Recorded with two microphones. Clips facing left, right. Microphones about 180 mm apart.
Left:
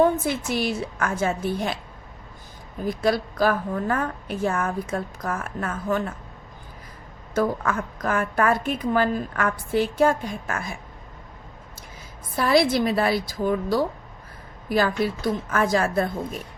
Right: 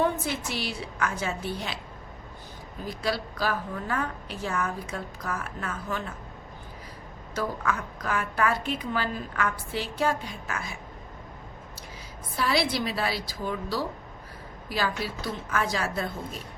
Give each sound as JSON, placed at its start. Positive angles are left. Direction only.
{"t": 0.0, "sound": "a woman's voice", "side_deg": 50}
{"t": 2.8, "sound": "a woman's voice", "side_deg": 50}
{"t": 7.3, "sound": "a woman's voice", "side_deg": 50}
{"t": 12.4, "sound": "a woman's voice", "side_deg": 50}